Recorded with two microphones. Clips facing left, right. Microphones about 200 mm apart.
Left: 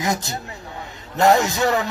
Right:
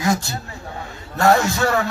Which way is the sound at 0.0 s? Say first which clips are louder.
Right 3 dB; 20° left (ahead or behind).